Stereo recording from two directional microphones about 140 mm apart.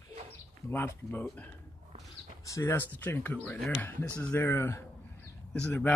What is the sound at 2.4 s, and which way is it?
Speech, 20° left (ahead or behind).